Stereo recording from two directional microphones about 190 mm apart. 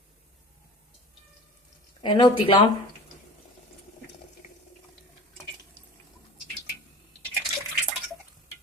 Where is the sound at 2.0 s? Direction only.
25° left (ahead or behind).